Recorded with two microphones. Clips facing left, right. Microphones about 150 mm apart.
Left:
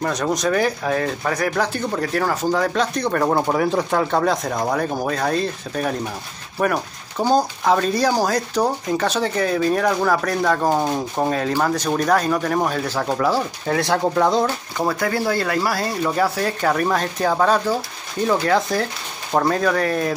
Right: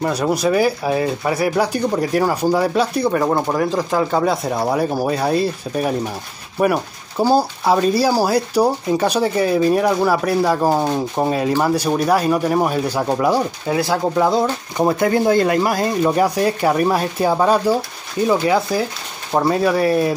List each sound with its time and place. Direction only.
0.0 s speech: 10° right (ahead or behind)
13.7 s speech: 5° right (ahead or behind)
14.4 s speech: 20° right (ahead or behind)